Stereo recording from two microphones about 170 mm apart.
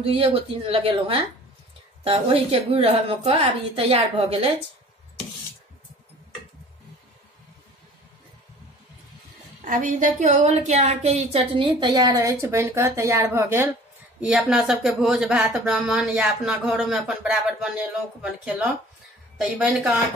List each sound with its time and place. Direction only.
0.1 s a woman's voice: 35° right (ahead or behind)
9.7 s a woman's voice: 50° right (ahead or behind); by 20.0 s 10° right (ahead or behind)